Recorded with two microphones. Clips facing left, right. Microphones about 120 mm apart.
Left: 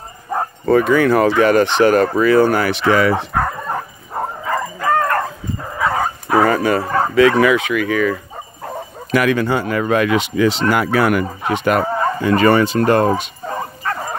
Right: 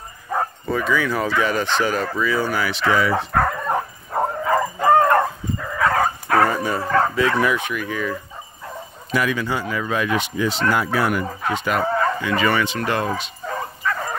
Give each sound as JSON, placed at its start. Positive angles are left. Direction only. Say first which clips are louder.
{"t": 0.7, "sound": "speech", "louder": "left 11 dB", "side_deg": 60}
{"t": 3.3, "sound": "bow-wow", "louder": "even", "side_deg": 0}
{"t": 4.7, "sound": "bow-wow", "louder": "right 2 dB", "side_deg": -20}
{"t": 5.8, "sound": "bow-wow", "louder": "even", "side_deg": 5}
{"t": 6.4, "sound": "speech", "louder": "left 5 dB", "side_deg": 80}
{"t": 7.2, "sound": "speech", "louder": "left 7 dB", "side_deg": 90}
{"t": 8.6, "sound": "speech", "louder": "left 7 dB", "side_deg": 65}
{"t": 10.7, "sound": "speech", "louder": "left 5 dB", "side_deg": 70}
{"t": 11.5, "sound": "speech", "louder": "left 7 dB", "side_deg": 55}
{"t": 11.8, "sound": "bow-wow", "louder": "left 1 dB", "side_deg": 20}
{"t": 12.2, "sound": "fowl", "louder": "left 7 dB", "side_deg": 40}